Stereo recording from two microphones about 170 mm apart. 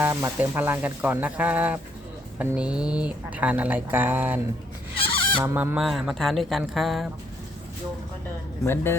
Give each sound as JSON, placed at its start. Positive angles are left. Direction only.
{"t": 0.0, "sound": "speech", "side_deg": -15}
{"t": 5.4, "sound": "speech", "side_deg": -15}
{"t": 5.7, "sound": "speech", "side_deg": 0}
{"t": 8.6, "sound": "speech", "side_deg": 15}